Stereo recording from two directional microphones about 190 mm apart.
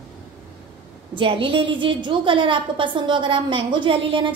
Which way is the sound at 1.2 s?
30° right (ahead or behind).